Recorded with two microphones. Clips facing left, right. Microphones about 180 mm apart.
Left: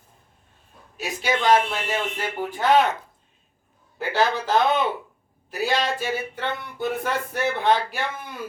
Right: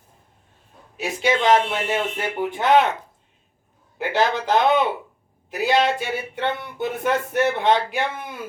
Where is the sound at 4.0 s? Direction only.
20° right (ahead or behind).